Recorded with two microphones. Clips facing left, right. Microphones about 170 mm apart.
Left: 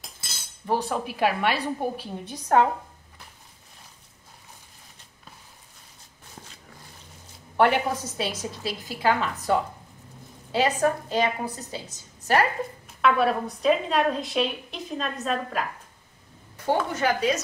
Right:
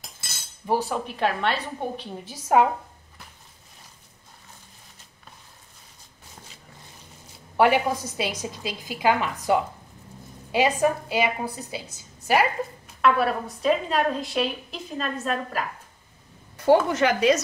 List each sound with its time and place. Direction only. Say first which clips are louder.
0.7 s a woman's voice: right 1 dB; 5° right (ahead or behind)
2.2 s a woman's voice: right 1 dB; 5° right (ahead or behind)
7.5 s a woman's voice: right 1 dB; 10° right (ahead or behind)
16.9 s speech: right 4 dB; 80° right